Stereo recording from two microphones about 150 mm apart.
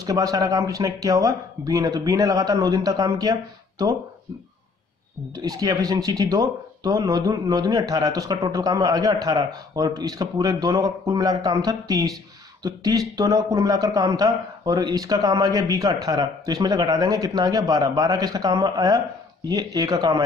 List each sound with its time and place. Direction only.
0.0 s a man's voice: 25° right (ahead or behind)
5.3 s a man's voice: 25° right (ahead or behind)